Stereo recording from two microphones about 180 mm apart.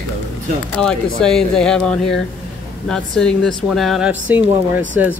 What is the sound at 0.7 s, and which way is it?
Speech, 5° left (ahead or behind).